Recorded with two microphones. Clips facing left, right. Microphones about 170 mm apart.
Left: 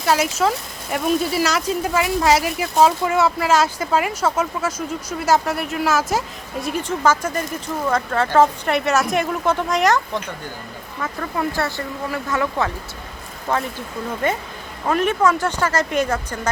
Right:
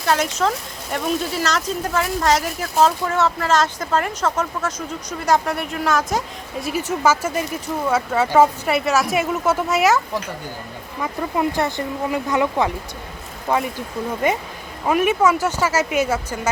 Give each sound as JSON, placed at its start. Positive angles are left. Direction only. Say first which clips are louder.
{"t": 0.0, "sound": "speech", "louder": "left 1 dB", "side_deg": 5}
{"t": 11.0, "sound": "speech", "louder": "right 3 dB", "side_deg": -15}